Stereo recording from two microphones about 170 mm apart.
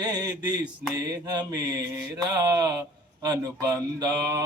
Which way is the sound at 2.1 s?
20° right (ahead or behind).